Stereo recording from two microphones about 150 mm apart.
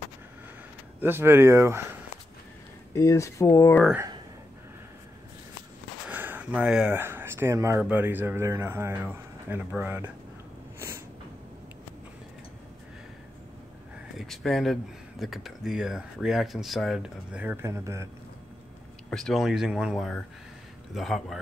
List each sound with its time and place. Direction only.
1.0 s speech: 15° right (ahead or behind)
2.9 s speech: 20° left (ahead or behind)
6.0 s a sound: 10° right (ahead or behind)
7.0 s speech: 15° right (ahead or behind)
14.1 s speech: centre (ahead or behind); by 18.0 s 20° right (ahead or behind)
19.0 s speech: 5° left (ahead or behind)